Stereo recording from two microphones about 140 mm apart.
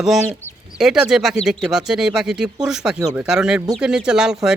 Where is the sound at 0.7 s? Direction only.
5° right (ahead or behind).